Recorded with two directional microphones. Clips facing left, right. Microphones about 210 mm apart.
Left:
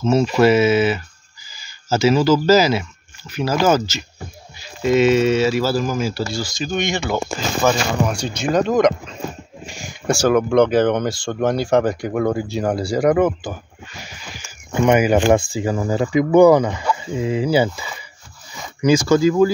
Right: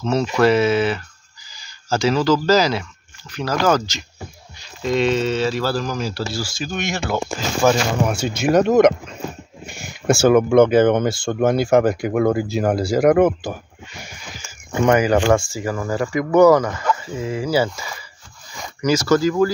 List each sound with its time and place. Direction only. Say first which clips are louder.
0.0 s speech: left 2 dB; 5° left (ahead or behind)
10.0 s speech: right 2 dB; 5° right (ahead or behind)
14.9 s speech: left 1 dB; 15° left (ahead or behind)